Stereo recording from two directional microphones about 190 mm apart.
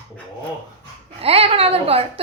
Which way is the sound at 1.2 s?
30° right (ahead or behind).